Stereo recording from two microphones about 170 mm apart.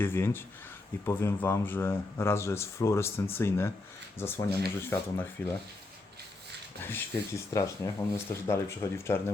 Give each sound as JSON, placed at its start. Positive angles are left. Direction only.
{"t": 0.0, "sound": "speech", "side_deg": 15}
{"t": 6.8, "sound": "speech", "side_deg": 15}